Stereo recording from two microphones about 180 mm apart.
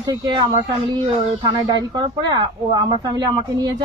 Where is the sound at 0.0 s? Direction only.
20° right (ahead or behind).